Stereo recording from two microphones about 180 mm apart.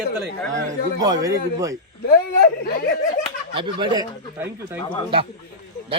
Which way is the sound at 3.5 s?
25° right (ahead or behind).